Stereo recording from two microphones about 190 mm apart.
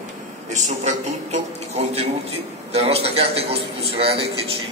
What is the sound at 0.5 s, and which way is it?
A man's voice, 40° right (ahead or behind).